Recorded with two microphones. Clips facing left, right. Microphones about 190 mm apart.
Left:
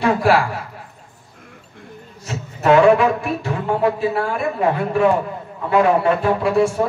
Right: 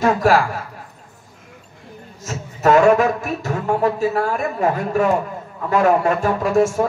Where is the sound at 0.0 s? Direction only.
45° right (ahead or behind).